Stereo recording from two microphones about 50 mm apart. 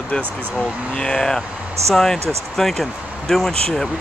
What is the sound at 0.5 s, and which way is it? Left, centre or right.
Speech, centre.